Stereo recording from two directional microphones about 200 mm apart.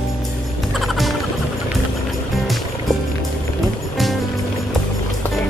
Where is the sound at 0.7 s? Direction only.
Centre (ahead or behind).